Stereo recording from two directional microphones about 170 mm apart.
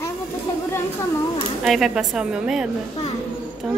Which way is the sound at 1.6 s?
Centre (ahead or behind).